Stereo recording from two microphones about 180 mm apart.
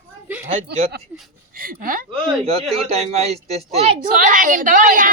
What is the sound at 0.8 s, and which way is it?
A woman's voice, 60° right (ahead or behind).